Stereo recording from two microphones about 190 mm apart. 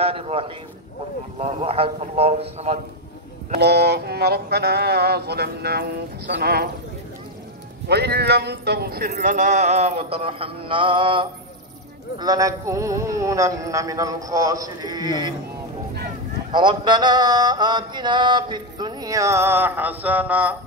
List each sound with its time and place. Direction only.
0.0 s a sound: 30° right (ahead or behind)
1.4 s mantra: 30° right (ahead or behind)
3.5 s speech: 60° right (ahead or behind)
7.9 s speech: 60° right (ahead or behind)
9.2 s mantra: 40° right (ahead or behind); by 11.2 s 25° right (ahead or behind)
12.2 s speech: 20° right (ahead or behind)
16.5 s mantra: 25° right (ahead or behind); by 20.5 s 10° right (ahead or behind)